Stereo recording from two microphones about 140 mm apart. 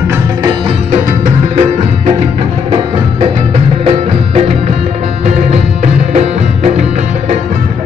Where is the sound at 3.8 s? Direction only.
45° right (ahead or behind).